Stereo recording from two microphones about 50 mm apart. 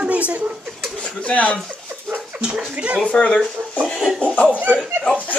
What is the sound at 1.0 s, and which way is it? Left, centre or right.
Speech, left.